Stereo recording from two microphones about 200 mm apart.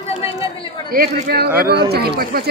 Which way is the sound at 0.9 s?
50° right (ahead or behind).